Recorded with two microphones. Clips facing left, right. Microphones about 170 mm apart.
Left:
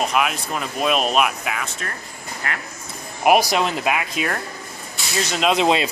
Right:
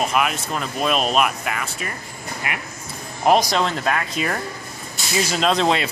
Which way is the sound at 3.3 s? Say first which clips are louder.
Left 1 dB; 10° left (ahead or behind).